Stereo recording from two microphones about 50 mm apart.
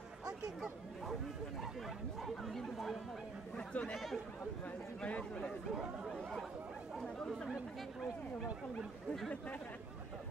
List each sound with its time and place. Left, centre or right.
2.2 s speech: centre
3.5 s speech: left
3.9 s speech: centre
5.0 s speech: left
7.0 s speech: centre